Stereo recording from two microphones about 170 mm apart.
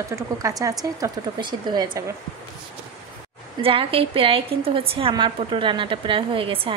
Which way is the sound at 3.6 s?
35° right (ahead or behind).